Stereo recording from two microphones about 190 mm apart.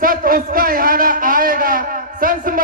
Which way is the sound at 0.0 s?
50° right (ahead or behind).